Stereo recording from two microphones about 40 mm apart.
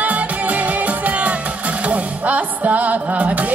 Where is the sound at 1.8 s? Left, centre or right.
Right.